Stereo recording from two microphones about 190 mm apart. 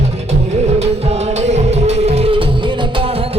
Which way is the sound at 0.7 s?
35° right (ahead or behind).